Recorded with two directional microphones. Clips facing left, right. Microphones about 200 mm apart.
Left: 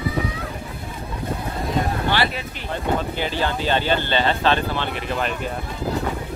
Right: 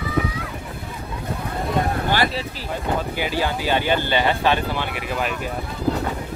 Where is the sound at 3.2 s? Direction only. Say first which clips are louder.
Even; 10° right (ahead or behind).